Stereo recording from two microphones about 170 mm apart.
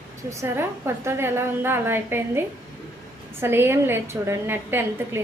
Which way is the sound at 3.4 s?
15° right (ahead or behind).